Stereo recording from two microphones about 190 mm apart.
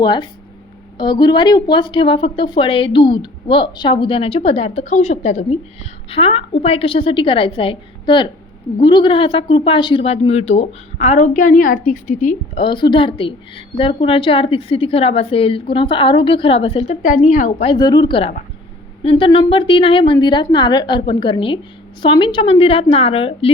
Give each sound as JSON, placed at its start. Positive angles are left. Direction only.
{"t": 0.0, "sound": "a woman's voice", "side_deg": 25}
{"t": 12.5, "sound": "a woman's voice", "side_deg": 25}
{"t": 17.7, "sound": "a woman's voice", "side_deg": 20}